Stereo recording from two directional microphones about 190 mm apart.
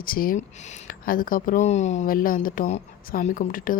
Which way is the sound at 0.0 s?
50° left (ahead or behind).